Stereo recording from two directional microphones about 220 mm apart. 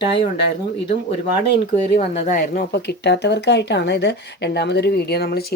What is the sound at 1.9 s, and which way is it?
Speech, 30° left (ahead or behind).